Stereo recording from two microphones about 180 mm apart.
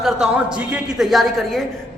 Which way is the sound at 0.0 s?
5° right (ahead or behind).